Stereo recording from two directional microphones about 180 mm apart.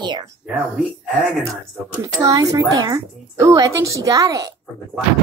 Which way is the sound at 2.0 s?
20° right (ahead or behind).